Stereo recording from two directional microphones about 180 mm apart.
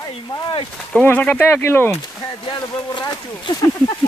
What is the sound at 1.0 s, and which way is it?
Speech, 10° left (ahead or behind).